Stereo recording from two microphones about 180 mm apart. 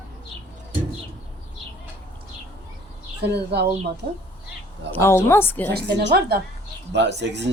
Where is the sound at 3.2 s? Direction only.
65° right (ahead or behind).